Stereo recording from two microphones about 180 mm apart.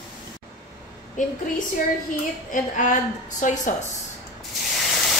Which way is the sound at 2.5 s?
45° left (ahead or behind).